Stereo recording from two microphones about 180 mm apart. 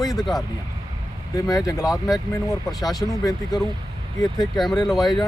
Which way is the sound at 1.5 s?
20° left (ahead or behind).